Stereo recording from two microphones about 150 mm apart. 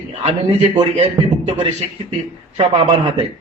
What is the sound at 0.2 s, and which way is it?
A man's voice, 45° right (ahead or behind).